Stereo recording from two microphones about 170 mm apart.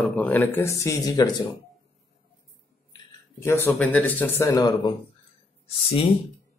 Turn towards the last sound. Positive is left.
turn(degrees=35)  # may be behind; listen again after turning